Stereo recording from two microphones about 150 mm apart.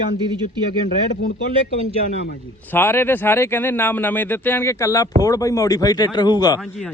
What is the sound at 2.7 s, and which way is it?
A man's voice, 15° left (ahead or behind).